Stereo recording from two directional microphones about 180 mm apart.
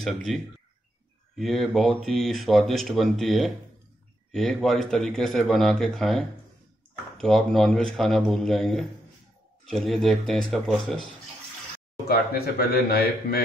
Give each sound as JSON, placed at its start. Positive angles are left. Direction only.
{"t": 0.0, "sound": "speech", "side_deg": 0}
{"t": 12.1, "sound": "speech", "side_deg": 55}